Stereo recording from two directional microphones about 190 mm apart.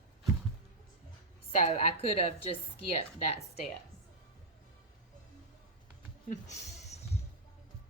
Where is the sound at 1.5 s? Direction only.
35° left (ahead or behind).